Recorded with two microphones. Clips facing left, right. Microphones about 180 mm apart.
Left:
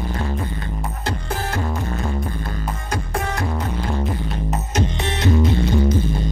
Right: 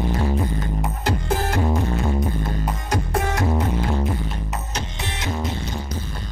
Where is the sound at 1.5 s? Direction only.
15° right (ahead or behind).